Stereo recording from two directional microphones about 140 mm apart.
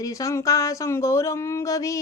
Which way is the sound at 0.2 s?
25° left (ahead or behind).